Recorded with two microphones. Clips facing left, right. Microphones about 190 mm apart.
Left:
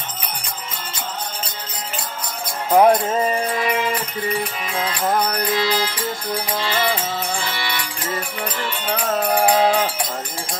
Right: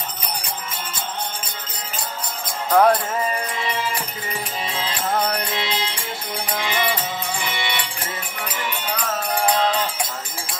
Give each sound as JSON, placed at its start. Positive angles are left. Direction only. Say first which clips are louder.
{"t": 2.7, "sound": "music", "louder": "left 3 dB", "side_deg": 25}
{"t": 5.5, "sound": "music", "louder": "left 5 dB", "side_deg": -25}
{"t": 8.9, "sound": "music", "louder": "left 7 dB", "side_deg": 55}
{"t": 9.6, "sound": "music", "louder": "left 4 dB", "side_deg": 10}